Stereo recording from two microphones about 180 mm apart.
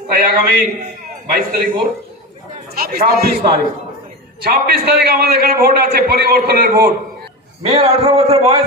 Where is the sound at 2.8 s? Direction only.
55° right (ahead or behind).